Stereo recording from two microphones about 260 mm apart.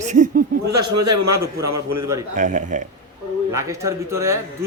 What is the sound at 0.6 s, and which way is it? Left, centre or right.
Speech, right.